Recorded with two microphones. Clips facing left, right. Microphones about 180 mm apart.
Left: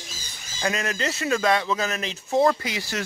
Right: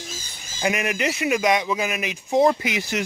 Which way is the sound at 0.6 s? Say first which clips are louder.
Right 3 dB; 15° right (ahead or behind).